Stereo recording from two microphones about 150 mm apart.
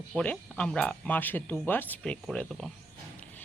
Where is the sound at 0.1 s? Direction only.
5° left (ahead or behind).